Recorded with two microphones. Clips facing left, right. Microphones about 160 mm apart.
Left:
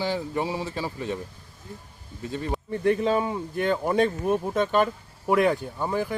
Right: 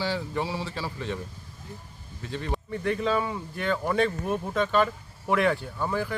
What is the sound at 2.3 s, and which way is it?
Speech, 10° left (ahead or behind).